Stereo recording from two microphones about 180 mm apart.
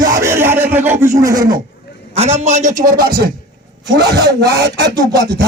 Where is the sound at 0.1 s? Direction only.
15° right (ahead or behind).